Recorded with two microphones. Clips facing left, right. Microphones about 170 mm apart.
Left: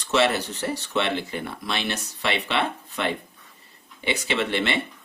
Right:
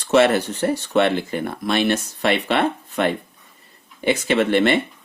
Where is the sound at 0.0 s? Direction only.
50° right (ahead or behind).